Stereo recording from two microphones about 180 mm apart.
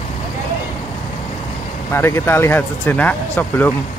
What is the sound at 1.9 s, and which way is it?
Speech, 15° left (ahead or behind).